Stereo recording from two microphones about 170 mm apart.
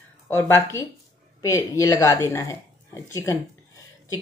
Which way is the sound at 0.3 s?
15° left (ahead or behind).